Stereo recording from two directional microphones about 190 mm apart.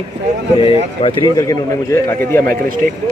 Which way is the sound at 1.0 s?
25° left (ahead or behind).